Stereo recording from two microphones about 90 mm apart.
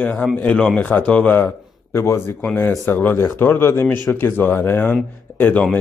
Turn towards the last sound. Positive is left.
turn(degrees=15)  # may be behind; listen again after turning